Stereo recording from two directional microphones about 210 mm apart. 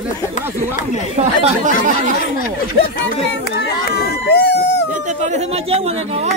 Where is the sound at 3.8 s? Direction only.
50° left (ahead or behind).